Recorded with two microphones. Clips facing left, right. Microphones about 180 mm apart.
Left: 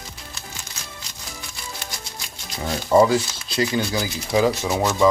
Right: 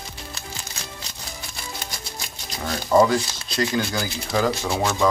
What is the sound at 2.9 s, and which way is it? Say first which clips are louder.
Speech: left 1 dB; 5° left (ahead or behind).